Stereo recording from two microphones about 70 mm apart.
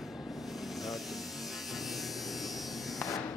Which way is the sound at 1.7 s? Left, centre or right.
Centre.